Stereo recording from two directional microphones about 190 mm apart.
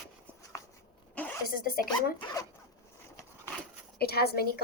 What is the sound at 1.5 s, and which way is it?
Speech, 50° left (ahead or behind).